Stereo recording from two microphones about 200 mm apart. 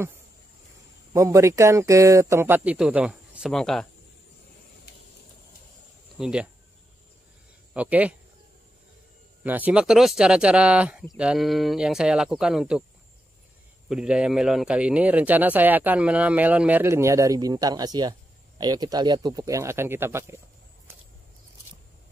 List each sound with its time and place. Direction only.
1.1 s a man's voice: 15° right (ahead or behind); by 3.8 s centre (ahead or behind)
6.1 s speech: 5° right (ahead or behind)
7.7 s a man's voice: 5° right (ahead or behind)
9.4 s speech: 10° right (ahead or behind)
13.8 s a man's voice: 5° right (ahead or behind)